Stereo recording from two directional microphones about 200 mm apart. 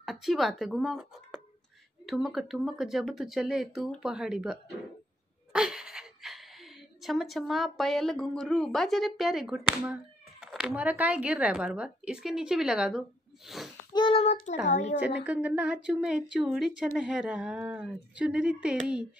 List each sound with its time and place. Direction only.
0.0 s speech: centre (ahead or behind)
13.9 s child singing: 25° left (ahead or behind)
14.7 s a woman's voice: 35° left (ahead or behind)
15.0 s speech: 5° right (ahead or behind)